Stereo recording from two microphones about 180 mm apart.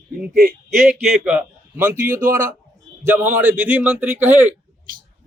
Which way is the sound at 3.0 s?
10° right (ahead or behind).